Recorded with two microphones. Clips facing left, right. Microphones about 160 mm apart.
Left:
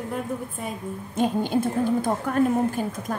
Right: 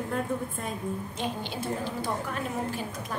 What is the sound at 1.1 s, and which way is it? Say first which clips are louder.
A woman's voice: left 10 dB; 45° left (ahead or behind).